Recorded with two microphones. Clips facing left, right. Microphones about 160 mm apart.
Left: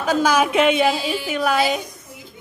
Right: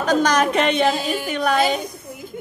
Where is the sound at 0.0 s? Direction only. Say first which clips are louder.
Even; 5° left (ahead or behind).